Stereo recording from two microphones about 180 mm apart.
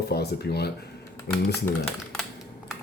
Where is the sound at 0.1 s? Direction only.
65° left (ahead or behind).